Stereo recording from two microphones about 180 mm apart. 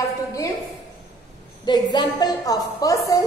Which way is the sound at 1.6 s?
25° left (ahead or behind).